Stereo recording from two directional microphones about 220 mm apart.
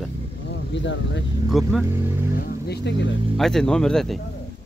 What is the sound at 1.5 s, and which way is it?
Speech, centre (ahead or behind).